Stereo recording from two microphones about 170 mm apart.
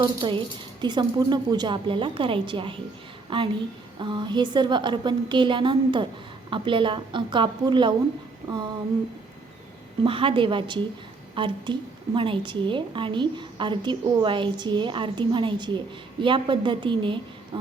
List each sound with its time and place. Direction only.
0.0 s a woman's voice: 30° right (ahead or behind)
10.0 s a woman's voice: 30° right (ahead or behind)